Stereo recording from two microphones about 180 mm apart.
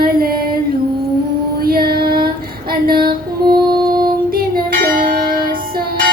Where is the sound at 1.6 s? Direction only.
55° right (ahead or behind).